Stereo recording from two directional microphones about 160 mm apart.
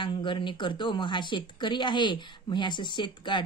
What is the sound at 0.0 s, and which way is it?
Speech, 30° left (ahead or behind).